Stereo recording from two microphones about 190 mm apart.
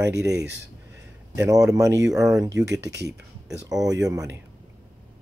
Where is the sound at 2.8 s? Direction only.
65° right (ahead or behind).